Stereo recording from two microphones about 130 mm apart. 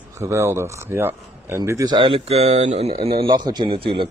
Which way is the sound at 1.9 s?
40° right (ahead or behind).